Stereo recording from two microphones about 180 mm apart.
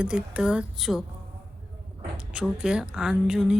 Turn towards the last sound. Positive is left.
turn(degrees=-5)  # may be behind; listen again after turning